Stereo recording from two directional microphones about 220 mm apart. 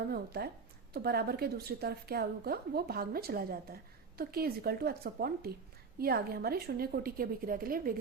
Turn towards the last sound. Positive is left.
turn(degrees=-40)  # may be behind; listen again after turning